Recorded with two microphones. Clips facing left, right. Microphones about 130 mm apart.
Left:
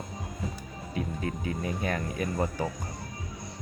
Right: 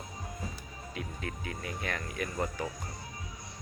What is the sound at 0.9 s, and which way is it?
Speech, 30° left (ahead or behind).